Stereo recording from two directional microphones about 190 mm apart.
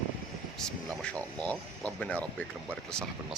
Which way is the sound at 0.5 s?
5° left (ahead or behind).